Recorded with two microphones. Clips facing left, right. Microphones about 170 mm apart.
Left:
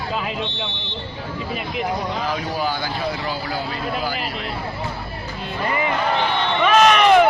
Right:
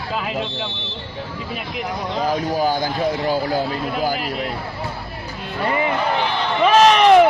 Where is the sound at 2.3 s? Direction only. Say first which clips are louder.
Right 7 dB; 45° right (ahead or behind).